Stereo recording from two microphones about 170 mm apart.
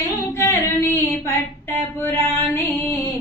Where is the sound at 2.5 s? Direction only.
15° left (ahead or behind).